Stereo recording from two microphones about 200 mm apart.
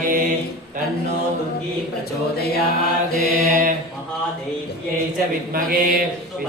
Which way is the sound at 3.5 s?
40° right (ahead or behind).